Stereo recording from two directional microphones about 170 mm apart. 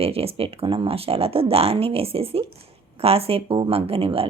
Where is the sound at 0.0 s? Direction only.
35° right (ahead or behind).